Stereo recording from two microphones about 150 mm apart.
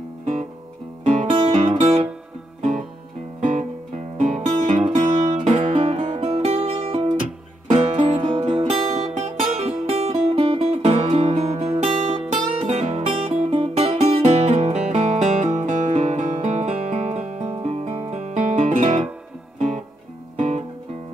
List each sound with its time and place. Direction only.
0.2 s guitar: 50° right (ahead or behind)
1.0 s music: 50° right (ahead or behind)
3.3 s music: 60° right (ahead or behind)
18.8 s music: 45° right (ahead or behind)
20.3 s guitar: 50° right (ahead or behind)